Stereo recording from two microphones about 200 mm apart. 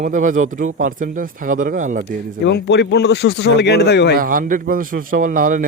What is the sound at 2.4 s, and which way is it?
Speech, 60° left (ahead or behind).